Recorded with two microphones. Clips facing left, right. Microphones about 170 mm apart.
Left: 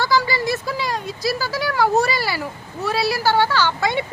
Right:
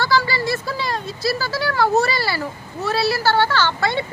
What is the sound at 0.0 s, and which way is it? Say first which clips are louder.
Speech: even; 15° left (ahead or behind).